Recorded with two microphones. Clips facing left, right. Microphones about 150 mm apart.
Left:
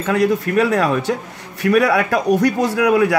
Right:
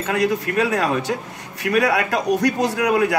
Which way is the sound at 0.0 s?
55° left (ahead or behind).